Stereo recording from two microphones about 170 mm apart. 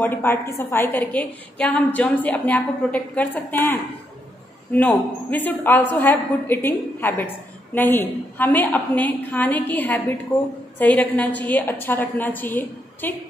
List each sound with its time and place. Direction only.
0.0 s a woman's voice: 10° left (ahead or behind)